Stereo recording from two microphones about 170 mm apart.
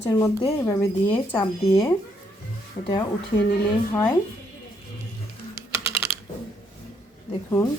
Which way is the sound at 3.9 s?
15° left (ahead or behind).